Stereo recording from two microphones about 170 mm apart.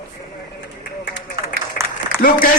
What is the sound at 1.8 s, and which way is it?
Applause, 55° left (ahead or behind).